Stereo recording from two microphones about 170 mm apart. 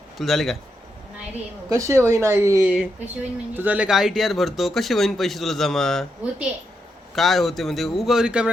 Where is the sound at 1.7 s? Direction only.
20° right (ahead or behind).